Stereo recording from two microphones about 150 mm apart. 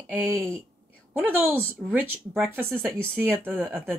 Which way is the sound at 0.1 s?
10° right (ahead or behind).